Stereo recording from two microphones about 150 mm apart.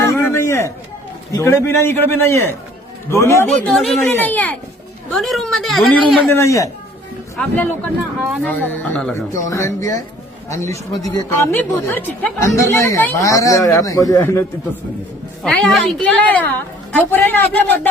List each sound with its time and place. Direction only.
0.0 s a sound: 20° left (ahead or behind)
1.3 s a man's voice: 15° left (ahead or behind)
3.4 s speech: 5° left (ahead or behind)
4.0 s a man's voice: 10° left (ahead or behind)
6.3 s a man's voice: 20° left (ahead or behind)
9.1 s speech: 20° left (ahead or behind)
15.4 s a man's voice: centre (ahead or behind)